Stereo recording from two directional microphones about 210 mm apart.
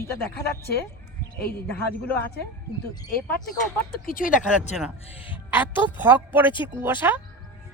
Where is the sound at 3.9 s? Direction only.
40° left (ahead or behind).